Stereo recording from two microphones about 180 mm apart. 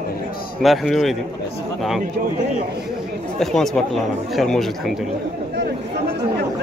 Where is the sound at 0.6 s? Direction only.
Centre (ahead or behind).